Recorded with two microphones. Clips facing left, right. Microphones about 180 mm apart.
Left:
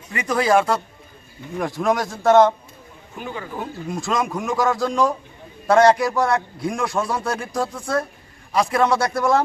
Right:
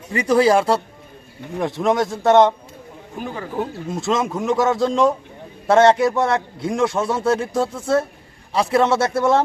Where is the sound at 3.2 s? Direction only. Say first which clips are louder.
Right 2 dB; 40° right (ahead or behind).